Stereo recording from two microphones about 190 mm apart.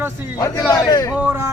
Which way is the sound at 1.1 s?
10° right (ahead or behind).